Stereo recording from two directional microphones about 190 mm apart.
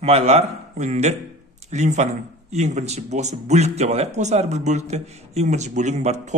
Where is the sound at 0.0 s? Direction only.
35° right (ahead or behind).